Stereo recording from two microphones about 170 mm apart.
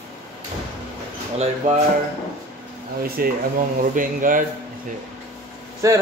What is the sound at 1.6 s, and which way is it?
Speech, 45° right (ahead or behind).